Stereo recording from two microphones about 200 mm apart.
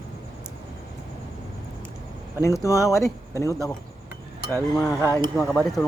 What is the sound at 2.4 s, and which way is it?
Speech, 15° left (ahead or behind).